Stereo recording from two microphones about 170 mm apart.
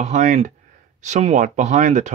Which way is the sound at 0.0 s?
45° right (ahead or behind).